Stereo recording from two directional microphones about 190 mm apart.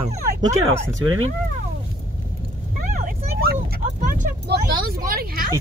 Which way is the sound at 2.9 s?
50° right (ahead or behind).